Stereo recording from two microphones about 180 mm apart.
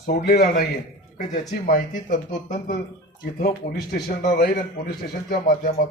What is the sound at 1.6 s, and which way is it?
Speech, 50° left (ahead or behind).